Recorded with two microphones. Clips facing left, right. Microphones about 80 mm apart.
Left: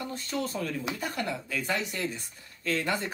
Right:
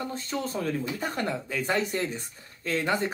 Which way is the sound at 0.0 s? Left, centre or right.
Right.